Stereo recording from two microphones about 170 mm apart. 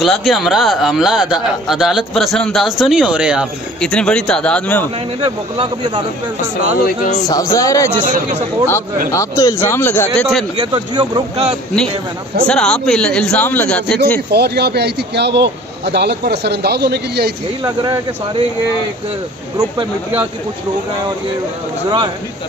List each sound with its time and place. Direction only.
0.0 s speech: centre (ahead or behind)
5.2 s speech: 30° right (ahead or behind)
6.6 s speech: 50° left (ahead or behind)
7.2 s speech: 20° left (ahead or behind)
8.0 s speech: 45° right (ahead or behind)
9.1 s speech: 15° left (ahead or behind)
10.1 s speech: centre (ahead or behind)
10.6 s speech: 25° right (ahead or behind)
12.4 s speech: 5° left (ahead or behind)
14.3 s speech: 75° right (ahead or behind)
17.6 s speech: 25° right (ahead or behind)
19.5 s speech: 30° right (ahead or behind)